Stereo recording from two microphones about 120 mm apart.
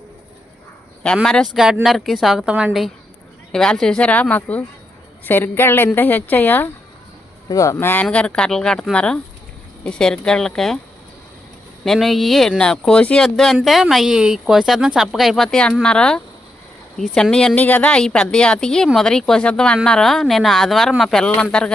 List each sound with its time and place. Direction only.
1.0 s speech: 5° left (ahead or behind)
3.5 s a woman's voice: 5° left (ahead or behind)
7.4 s a woman's voice: 25° left (ahead or behind); by 10.8 s 5° left (ahead or behind)
11.9 s a woman's voice: centre (ahead or behind)